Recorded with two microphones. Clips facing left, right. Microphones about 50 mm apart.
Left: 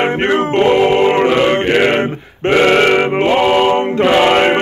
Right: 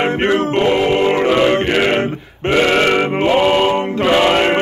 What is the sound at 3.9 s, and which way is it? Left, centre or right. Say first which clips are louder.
Music: left 2 dB; centre.